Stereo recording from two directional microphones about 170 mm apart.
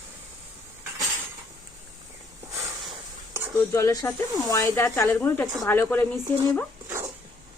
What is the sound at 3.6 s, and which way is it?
Speech, 15° left (ahead or behind).